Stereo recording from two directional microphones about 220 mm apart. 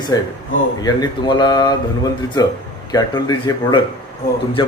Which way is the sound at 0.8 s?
20° left (ahead or behind).